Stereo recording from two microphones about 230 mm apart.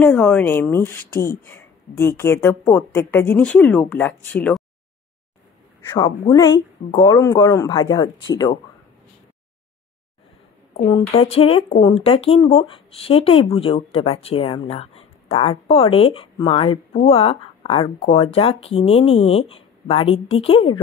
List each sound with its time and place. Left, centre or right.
0.0 s speech: centre
5.9 s speech: centre
10.9 s speech: centre